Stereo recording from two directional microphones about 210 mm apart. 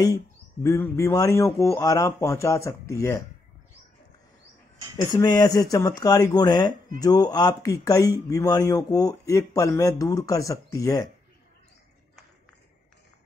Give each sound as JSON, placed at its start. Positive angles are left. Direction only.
{"t": 0.0, "sound": "speech", "side_deg": 15}
{"t": 5.1, "sound": "speech", "side_deg": 20}